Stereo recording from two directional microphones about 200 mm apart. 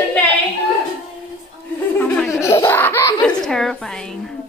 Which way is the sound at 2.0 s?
10° left (ahead or behind).